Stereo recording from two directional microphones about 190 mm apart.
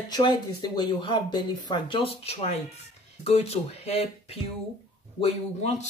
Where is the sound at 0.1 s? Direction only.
25° left (ahead or behind).